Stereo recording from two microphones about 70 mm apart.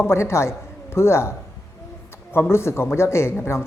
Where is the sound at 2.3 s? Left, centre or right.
Left.